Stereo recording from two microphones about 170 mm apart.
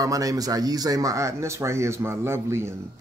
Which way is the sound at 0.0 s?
20° right (ahead or behind).